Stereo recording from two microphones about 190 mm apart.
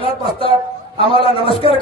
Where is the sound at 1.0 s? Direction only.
30° left (ahead or behind).